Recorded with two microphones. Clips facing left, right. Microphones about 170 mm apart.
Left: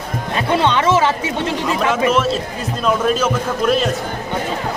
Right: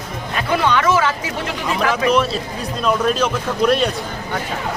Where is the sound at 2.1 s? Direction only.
Centre (ahead or behind).